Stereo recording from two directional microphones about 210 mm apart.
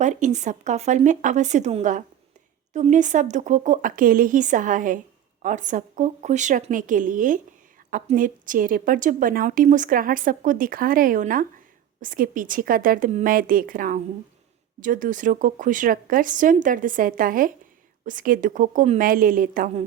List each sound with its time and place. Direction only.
0.0 s a woman's voice: 35° right (ahead or behind)